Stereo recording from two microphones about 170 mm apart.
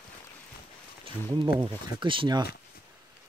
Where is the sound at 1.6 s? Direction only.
25° right (ahead or behind).